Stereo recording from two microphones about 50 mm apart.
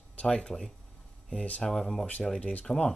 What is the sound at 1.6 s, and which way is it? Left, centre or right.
Speech, centre.